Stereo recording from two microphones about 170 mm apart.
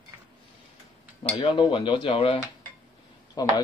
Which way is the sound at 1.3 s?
30° left (ahead or behind).